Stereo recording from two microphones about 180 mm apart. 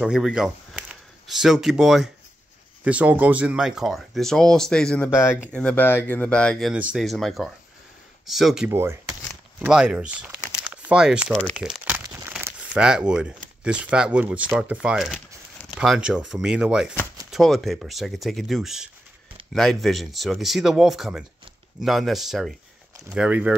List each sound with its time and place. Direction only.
0.0 s speech: 5° right (ahead or behind)
6.7 s speech: 5° right (ahead or behind)
8.6 s speech: 15° right (ahead or behind); by 11.7 s 5° left (ahead or behind)
11.8 s crumpling: 10° right (ahead or behind)
13.7 s speech: 5° right (ahead or behind)